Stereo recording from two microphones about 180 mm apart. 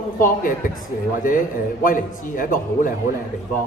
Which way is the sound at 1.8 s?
50° left (ahead or behind).